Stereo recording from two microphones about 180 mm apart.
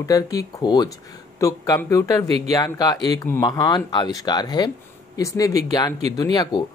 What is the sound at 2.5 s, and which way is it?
Speech, 20° left (ahead or behind).